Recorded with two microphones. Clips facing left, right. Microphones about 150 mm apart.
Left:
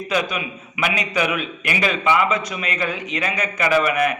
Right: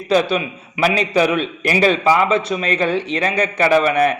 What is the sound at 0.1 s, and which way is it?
A man's voice, 30° right (ahead or behind).